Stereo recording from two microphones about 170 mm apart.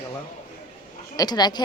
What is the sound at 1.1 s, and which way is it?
Speech, 25° left (ahead or behind).